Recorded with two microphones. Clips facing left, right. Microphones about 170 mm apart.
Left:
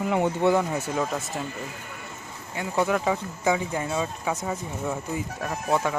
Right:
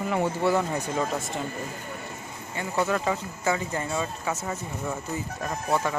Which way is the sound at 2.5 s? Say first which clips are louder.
Left 2 dB; 10° left (ahead or behind).